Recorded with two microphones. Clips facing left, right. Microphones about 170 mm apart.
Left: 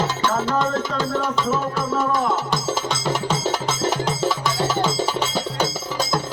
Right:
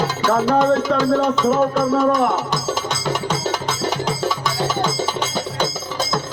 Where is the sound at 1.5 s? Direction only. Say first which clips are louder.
Right 6 dB; 65° right (ahead or behind).